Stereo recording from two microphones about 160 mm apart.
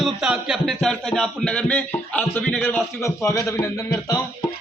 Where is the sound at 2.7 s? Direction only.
20° left (ahead or behind).